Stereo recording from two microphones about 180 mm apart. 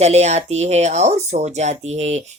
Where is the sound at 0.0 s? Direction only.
35° right (ahead or behind).